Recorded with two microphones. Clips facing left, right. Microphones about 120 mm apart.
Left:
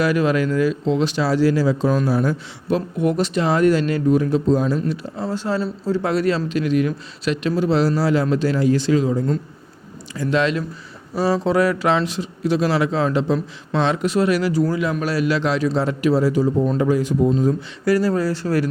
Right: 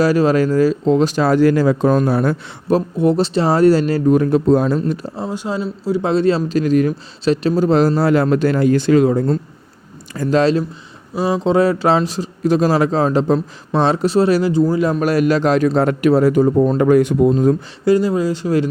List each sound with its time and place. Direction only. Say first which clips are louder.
0.0 s a man's voice: right 4 dB; 35° right (ahead or behind); by 2.3 s 60° right (ahead or behind)
2.6 s speech: right 5 dB; 35° right (ahead or behind)
4.1 s a man's voice: right 4 dB; 55° right (ahead or behind)
5.2 s speech: left 1 dB; 15° right (ahead or behind)
6.1 s a man's voice: right 6 dB; 25° right (ahead or behind); by 9.2 s 60° right (ahead or behind)
10.2 s speech: right 5 dB; 40° right (ahead or behind)
11.1 s speech: right 2 dB; 15° right (ahead or behind)
14.8 s a man's voice: right 6 dB; 40° right (ahead or behind); by 17.3 s 65° right (ahead or behind)
17.8 s speech: right 3 dB; 20° right (ahead or behind)